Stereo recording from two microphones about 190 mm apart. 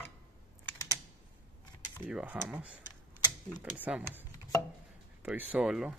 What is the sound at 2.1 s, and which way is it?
Cutlery, 5° right (ahead or behind).